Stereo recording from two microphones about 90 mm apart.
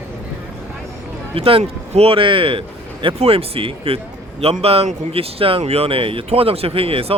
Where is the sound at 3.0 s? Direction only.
90° right.